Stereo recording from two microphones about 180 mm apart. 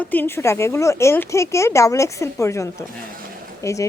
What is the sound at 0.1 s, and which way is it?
Speech, 10° left (ahead or behind).